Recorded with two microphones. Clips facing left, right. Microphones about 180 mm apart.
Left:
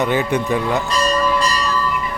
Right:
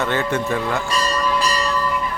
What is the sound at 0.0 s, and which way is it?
Speech, 15° left (ahead or behind).